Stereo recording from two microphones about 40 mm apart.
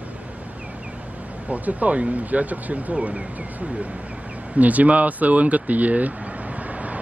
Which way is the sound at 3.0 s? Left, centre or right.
Right.